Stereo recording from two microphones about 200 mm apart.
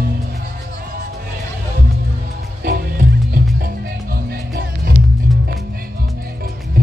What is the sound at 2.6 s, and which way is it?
Music, 50° right (ahead or behind).